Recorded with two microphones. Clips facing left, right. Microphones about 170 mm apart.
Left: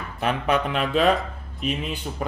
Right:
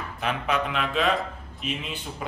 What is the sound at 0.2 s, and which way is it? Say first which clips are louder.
Speech: left 4 dB; 40° left (ahead or behind).